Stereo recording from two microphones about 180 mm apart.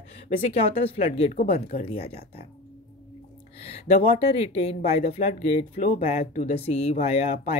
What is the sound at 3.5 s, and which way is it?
Music, 35° left (ahead or behind).